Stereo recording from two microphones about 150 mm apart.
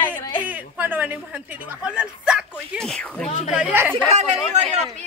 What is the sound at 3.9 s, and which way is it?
Speech, 50° right (ahead or behind).